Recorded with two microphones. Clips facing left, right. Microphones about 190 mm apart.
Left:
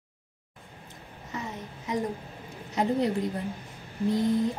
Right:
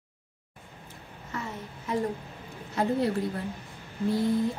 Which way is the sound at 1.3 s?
15° left (ahead or behind).